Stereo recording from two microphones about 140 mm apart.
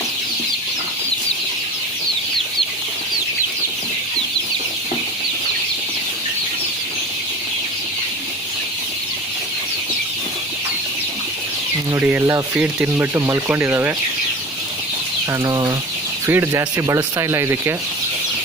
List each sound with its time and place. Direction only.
11.9 s speech: 15° right (ahead or behind)
15.3 s speech: 25° right (ahead or behind)